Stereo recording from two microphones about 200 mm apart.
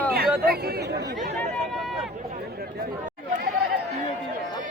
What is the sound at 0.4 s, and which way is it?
Speech, 50° right (ahead or behind).